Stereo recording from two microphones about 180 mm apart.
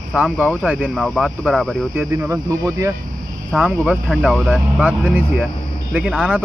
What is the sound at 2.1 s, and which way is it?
Speech, 15° right (ahead or behind).